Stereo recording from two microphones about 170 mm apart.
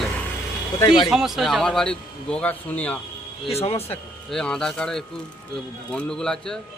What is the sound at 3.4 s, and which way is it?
Speech, 35° left (ahead or behind).